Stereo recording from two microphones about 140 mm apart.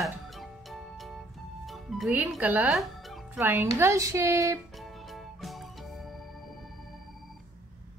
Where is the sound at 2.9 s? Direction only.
Centre (ahead or behind).